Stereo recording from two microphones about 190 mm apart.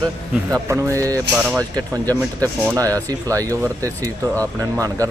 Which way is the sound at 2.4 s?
15° right (ahead or behind).